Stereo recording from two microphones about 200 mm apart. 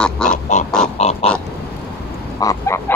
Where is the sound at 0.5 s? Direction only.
35° left (ahead or behind).